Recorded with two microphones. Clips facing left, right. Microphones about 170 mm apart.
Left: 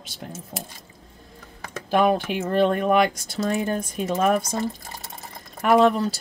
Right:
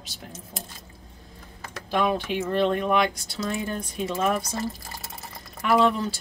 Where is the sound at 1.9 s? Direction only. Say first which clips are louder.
Left 4 dB; 50° left (ahead or behind).